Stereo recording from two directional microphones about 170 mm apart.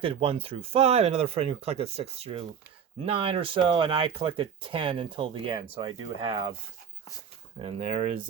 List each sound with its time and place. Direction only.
0.0 s speech: 30° right (ahead or behind)
7.8 s speech: 45° right (ahead or behind)